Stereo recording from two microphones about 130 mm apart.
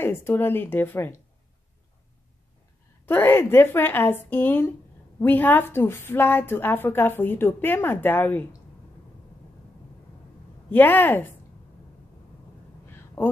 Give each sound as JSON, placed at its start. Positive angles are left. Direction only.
{"t": 0.0, "sound": "a woman's voice", "side_deg": 15}
{"t": 3.1, "sound": "a woman's voice", "side_deg": 15}
{"t": 10.7, "sound": "a woman's voice", "side_deg": 15}
{"t": 13.2, "sound": "speech", "side_deg": 15}